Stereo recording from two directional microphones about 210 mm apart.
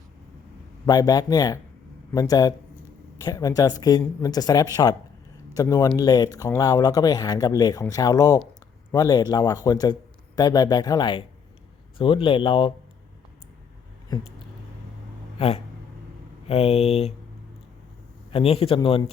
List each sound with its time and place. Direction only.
0.9 s a man's voice: 20° left (ahead or behind)
15.4 s a man's voice: 30° left (ahead or behind)
18.3 s a man's voice: 30° left (ahead or behind)